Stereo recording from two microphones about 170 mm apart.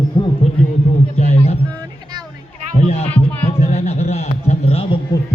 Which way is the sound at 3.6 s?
40° left (ahead or behind).